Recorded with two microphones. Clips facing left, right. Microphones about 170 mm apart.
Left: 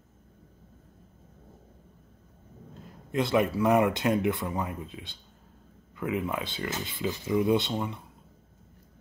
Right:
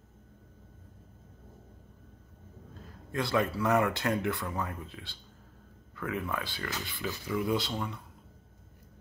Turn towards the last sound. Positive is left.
turn(degrees=20)  # may be behind; listen again after turning